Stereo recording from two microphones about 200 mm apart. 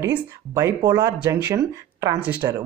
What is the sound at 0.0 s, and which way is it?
Speech, 15° right (ahead or behind).